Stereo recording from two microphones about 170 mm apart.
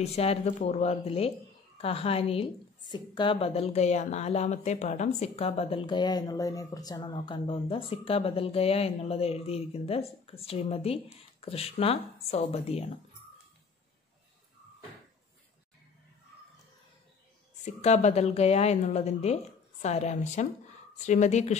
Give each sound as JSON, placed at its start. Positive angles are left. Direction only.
{"t": 0.0, "sound": "a woman's voice", "side_deg": 35}
{"t": 17.6, "sound": "a woman's voice", "side_deg": 40}